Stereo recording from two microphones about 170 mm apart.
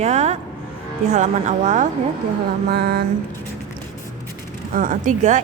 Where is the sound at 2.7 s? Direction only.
65° right (ahead or behind).